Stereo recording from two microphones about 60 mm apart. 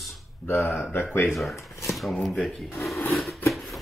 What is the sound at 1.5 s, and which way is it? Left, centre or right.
Speech, left.